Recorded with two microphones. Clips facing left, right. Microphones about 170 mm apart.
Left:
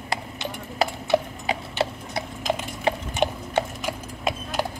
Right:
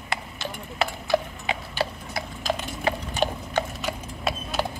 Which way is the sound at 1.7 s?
20° left (ahead or behind).